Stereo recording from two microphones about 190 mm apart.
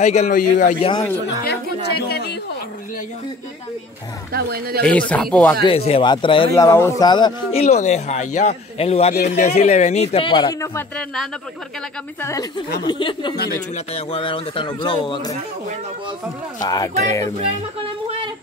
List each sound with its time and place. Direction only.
0.0 s speech: 35° left (ahead or behind)
1.4 s speech: 60° left (ahead or behind)
4.3 s speech: 55° right (ahead or behind)
5.1 s speech: 5° left (ahead or behind)
5.6 s speech: 30° left (ahead or behind)
6.5 s speech: 15° left (ahead or behind)
7.6 s speech: 35° left (ahead or behind)
10.7 s speech: 10° left (ahead or behind); by 15.3 s 25° left (ahead or behind)
16.6 s speech: 20° left (ahead or behind)